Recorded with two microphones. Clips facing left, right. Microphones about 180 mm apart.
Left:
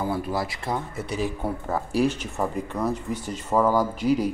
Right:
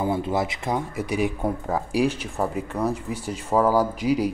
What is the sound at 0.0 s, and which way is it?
Speech, 25° right (ahead or behind).